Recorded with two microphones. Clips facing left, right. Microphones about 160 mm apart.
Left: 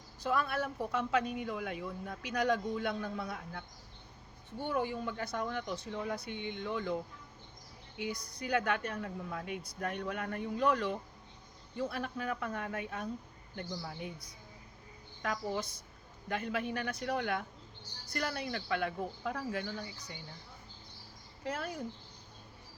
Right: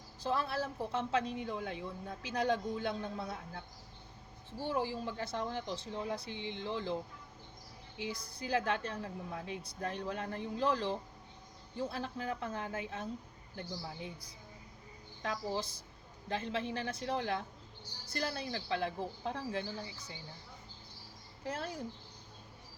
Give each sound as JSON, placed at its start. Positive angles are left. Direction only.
{"t": 0.2, "sound": "a woman's voice", "side_deg": -30}
{"t": 4.6, "sound": "a woman's voice", "side_deg": -30}
{"t": 7.9, "sound": "a woman's voice", "side_deg": -30}
{"t": 15.2, "sound": "a woman's voice", "side_deg": -30}
{"t": 21.4, "sound": "a woman's voice", "side_deg": -30}